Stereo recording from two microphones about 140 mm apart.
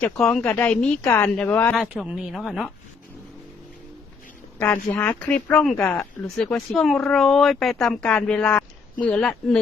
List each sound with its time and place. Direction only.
0.0 s speech: 10° left (ahead or behind)
1.7 s speech: centre (ahead or behind)
4.6 s speech: 15° left (ahead or behind)